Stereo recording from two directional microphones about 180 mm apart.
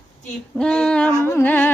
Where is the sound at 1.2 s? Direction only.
10° left (ahead or behind).